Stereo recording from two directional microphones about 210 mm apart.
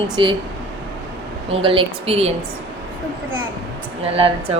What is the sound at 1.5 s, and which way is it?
Speech, 25° right (ahead or behind).